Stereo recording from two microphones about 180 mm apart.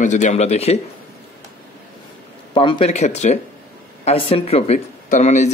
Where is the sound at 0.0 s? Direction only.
45° left (ahead or behind).